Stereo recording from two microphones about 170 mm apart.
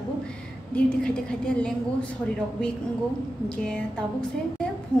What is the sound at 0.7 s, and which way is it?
A woman's voice, 5° left (ahead or behind).